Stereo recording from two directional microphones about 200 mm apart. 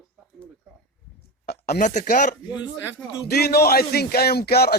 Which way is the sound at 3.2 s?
50° left (ahead or behind).